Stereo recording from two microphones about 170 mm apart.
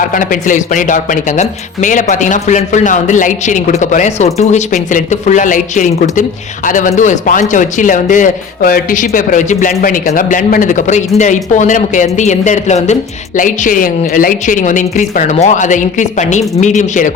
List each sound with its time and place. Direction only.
0.1 s speech: 50° left (ahead or behind)